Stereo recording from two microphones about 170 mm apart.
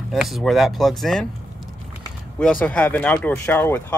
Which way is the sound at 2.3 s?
5° left (ahead or behind).